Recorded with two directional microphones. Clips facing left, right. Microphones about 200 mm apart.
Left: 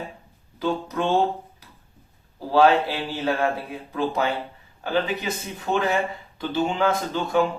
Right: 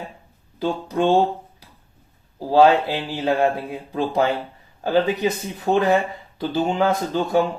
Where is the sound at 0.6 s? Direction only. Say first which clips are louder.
Right 4 dB; 30° right (ahead or behind).